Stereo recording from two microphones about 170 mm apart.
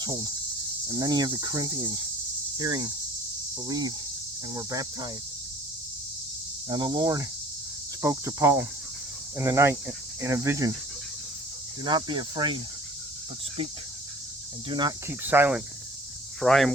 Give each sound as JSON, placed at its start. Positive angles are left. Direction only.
{"t": 0.0, "sound": "cricket", "side_deg": -25}
{"t": 6.7, "sound": "cricket", "side_deg": -25}
{"t": 11.8, "sound": "cricket", "side_deg": -25}
{"t": 14.7, "sound": "cricket", "side_deg": -25}
{"t": 15.0, "sound": "cricket", "side_deg": -10}
{"t": 16.4, "sound": "speech", "side_deg": 0}